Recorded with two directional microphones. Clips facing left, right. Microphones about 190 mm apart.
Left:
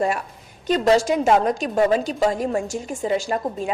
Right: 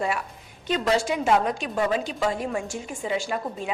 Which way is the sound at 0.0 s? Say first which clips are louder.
Left 5 dB; 45° left (ahead or behind).